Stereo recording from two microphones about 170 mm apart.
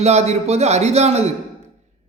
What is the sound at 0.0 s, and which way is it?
A man's voice, 40° right (ahead or behind).